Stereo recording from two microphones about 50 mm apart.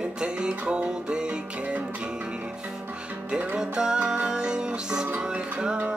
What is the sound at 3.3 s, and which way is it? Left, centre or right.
Music, right.